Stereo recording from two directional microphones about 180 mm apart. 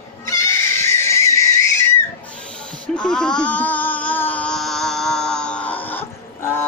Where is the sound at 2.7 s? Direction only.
5° left (ahead or behind).